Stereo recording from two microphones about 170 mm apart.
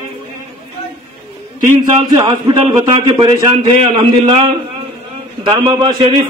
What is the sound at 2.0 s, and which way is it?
A man's voice, 25° right (ahead or behind).